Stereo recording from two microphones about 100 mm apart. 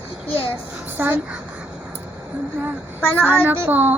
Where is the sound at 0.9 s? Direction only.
20° right (ahead or behind).